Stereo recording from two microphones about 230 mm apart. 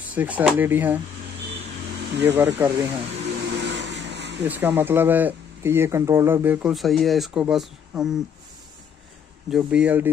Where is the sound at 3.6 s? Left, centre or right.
Right.